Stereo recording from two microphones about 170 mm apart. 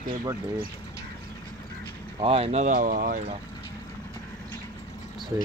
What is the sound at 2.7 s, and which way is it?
Speech, 55° right (ahead or behind).